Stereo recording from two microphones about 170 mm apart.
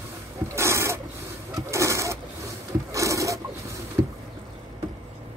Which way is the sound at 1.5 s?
15° right (ahead or behind).